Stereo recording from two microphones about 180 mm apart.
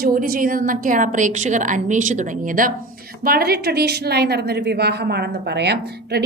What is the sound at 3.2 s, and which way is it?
A woman's voice, 60° right (ahead or behind).